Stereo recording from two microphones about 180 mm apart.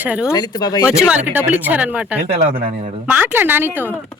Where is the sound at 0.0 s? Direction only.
10° right (ahead or behind).